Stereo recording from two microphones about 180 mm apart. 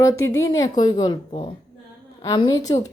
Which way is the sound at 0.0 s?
15° left (ahead or behind).